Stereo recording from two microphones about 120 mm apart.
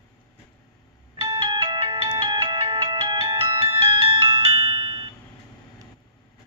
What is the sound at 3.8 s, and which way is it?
Music, 45° right (ahead or behind).